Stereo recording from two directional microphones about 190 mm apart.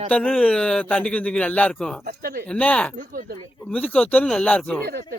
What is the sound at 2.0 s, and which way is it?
Speech, 50° right (ahead or behind).